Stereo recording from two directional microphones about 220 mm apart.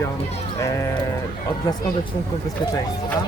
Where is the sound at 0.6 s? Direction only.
15° left (ahead or behind).